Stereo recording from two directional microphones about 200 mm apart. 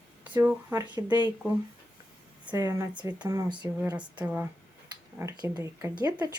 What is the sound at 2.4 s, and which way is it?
Speech, 20° right (ahead or behind).